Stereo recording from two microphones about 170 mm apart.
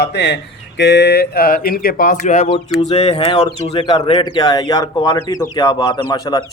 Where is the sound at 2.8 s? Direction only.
40° left (ahead or behind).